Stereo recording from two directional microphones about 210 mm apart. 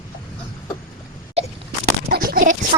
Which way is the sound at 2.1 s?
45° right (ahead or behind).